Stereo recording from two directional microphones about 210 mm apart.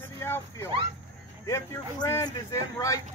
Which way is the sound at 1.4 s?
15° left (ahead or behind).